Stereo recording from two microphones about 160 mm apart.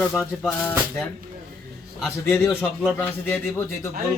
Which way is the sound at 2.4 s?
Centre (ahead or behind).